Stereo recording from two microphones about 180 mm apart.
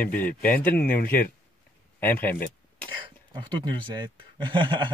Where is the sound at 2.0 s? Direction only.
10° left (ahead or behind).